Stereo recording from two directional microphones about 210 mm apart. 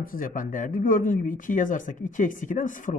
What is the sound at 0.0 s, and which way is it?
A woman's voice, 40° left (ahead or behind).